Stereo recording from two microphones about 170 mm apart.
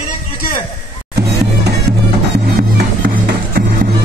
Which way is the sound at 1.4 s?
70° right (ahead or behind).